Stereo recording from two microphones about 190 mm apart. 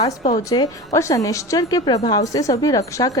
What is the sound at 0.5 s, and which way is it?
A woman's voice, 25° left (ahead or behind).